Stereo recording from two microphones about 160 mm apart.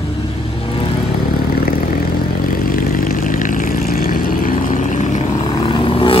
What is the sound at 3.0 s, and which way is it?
Vehicle, 55° left (ahead or behind).